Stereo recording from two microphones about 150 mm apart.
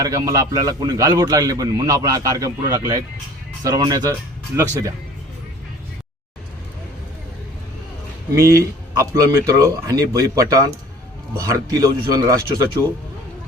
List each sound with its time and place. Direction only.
0.0 s a man's voice: 20° right (ahead or behind)
8.4 s a man's voice: 20° right (ahead or behind)